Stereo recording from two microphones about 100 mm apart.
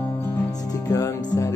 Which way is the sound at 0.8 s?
35° left (ahead or behind).